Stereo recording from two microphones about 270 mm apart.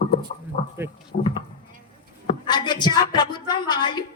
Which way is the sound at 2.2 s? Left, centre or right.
Centre.